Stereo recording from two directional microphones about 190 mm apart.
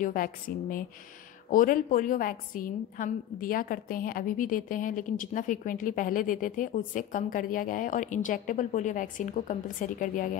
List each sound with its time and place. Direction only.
0.0 s a woman's voice: 45° left (ahead or behind)